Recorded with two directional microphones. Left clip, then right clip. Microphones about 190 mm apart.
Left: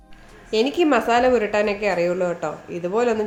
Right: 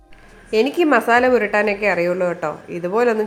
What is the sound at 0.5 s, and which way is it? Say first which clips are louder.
A woman's voice: right 3 dB; 20° right (ahead or behind).